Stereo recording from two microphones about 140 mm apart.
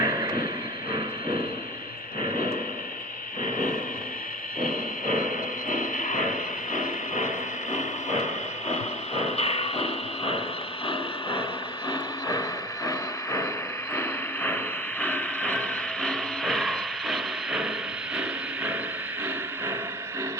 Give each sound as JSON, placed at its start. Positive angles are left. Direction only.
{"t": 0.0, "sound": "vehicle", "side_deg": -25}
{"t": 5.0, "sound": "a sound", "side_deg": 75}
{"t": 11.9, "sound": "vehicle", "side_deg": 25}
{"t": 15.0, "sound": "mechanisms", "side_deg": 10}
{"t": 18.2, "sound": "vehicle", "side_deg": -10}